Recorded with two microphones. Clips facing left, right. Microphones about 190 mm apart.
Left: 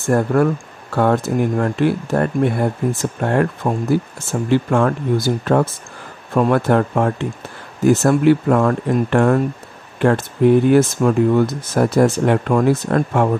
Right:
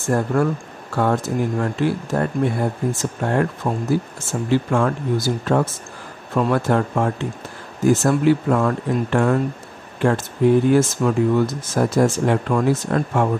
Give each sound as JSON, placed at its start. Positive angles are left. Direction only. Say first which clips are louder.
{"t": 0.1, "sound": "speech", "louder": "left 4 dB", "side_deg": 60}
{"t": 3.6, "sound": "speech", "louder": "left 3 dB", "side_deg": 45}
{"t": 4.3, "sound": "speech", "louder": "left 3 dB", "side_deg": 60}